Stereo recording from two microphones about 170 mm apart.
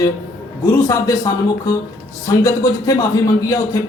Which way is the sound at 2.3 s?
20° left (ahead or behind).